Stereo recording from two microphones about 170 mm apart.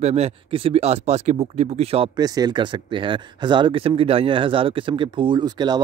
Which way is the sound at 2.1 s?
25° right (ahead or behind).